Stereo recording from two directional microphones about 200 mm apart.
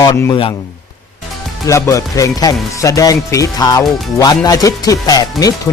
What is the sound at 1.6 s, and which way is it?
Speech, 15° left (ahead or behind).